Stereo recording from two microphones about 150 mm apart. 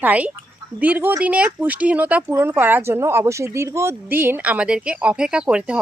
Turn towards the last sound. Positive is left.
turn(degrees=-5)  # may be behind; listen again after turning